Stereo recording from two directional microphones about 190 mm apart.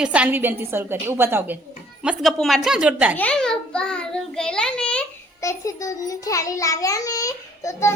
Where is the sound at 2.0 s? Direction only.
Centre (ahead or behind).